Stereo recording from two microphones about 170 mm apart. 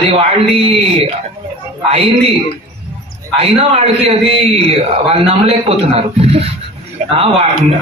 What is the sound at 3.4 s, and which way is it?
A man's voice, 35° right (ahead or behind).